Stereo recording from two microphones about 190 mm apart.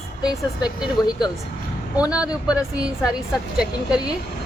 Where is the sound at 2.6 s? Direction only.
20° left (ahead or behind).